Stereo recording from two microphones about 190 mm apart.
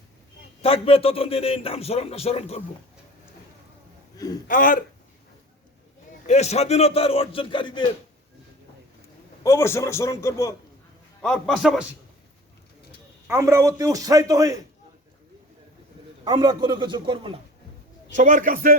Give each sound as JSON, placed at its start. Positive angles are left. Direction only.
{"t": 0.6, "sound": "a man's voice", "side_deg": 30}
{"t": 4.2, "sound": "a sound", "side_deg": 20}
{"t": 4.4, "sound": "speech", "side_deg": 45}
{"t": 6.2, "sound": "a man's voice", "side_deg": 35}
{"t": 9.4, "sound": "a man's voice", "side_deg": 15}
{"t": 11.2, "sound": "a man's voice", "side_deg": 5}
{"t": 13.2, "sound": "a man's voice", "side_deg": -15}
{"t": 16.2, "sound": "a man's voice", "side_deg": -20}
{"t": 18.1, "sound": "a man's voice", "side_deg": -40}